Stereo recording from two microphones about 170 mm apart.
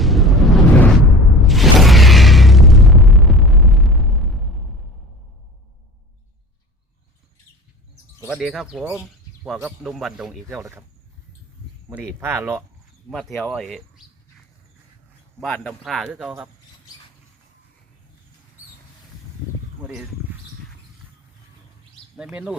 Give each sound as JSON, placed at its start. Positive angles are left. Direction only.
{"t": 0.0, "sound": "a sound", "side_deg": 0}
{"t": 8.3, "sound": "speech", "side_deg": 0}
{"t": 10.6, "sound": "speech", "side_deg": -15}
{"t": 11.9, "sound": "speech", "side_deg": -15}
{"t": 13.1, "sound": "speech", "side_deg": 0}
{"t": 15.4, "sound": "speech", "side_deg": 5}
{"t": 22.1, "sound": "speech", "side_deg": -5}